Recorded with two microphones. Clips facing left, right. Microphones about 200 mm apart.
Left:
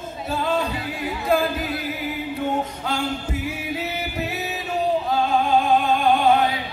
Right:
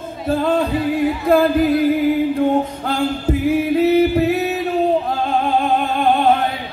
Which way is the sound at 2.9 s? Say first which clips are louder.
Right 8 dB; 55° right (ahead or behind).